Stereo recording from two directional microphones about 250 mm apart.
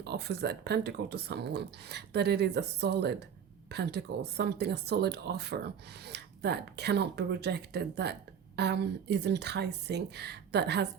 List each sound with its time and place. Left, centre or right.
0.0 s speech: right